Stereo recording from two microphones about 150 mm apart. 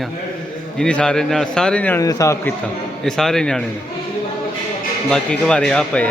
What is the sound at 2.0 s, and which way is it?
Speech, 20° left (ahead or behind).